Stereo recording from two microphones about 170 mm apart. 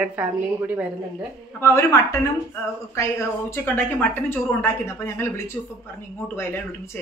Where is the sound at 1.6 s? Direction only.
15° left (ahead or behind).